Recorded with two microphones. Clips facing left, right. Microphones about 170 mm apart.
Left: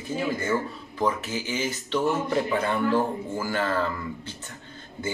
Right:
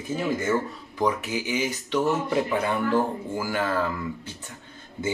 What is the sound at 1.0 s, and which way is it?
Speech, 10° right (ahead or behind).